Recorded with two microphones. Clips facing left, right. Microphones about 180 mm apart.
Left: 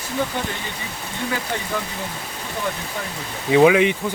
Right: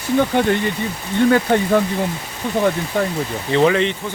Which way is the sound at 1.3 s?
60° right (ahead or behind).